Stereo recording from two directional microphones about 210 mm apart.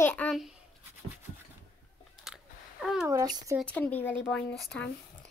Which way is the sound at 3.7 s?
5° left (ahead or behind).